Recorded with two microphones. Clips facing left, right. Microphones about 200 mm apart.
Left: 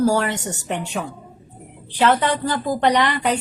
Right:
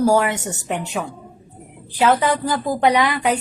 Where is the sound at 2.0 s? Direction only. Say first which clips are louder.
Right 1 dB; 10° right (ahead or behind).